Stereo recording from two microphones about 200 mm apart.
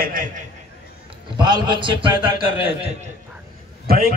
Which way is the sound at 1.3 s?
20° right (ahead or behind).